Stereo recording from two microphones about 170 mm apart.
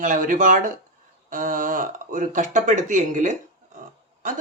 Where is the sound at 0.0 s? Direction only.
50° right (ahead or behind).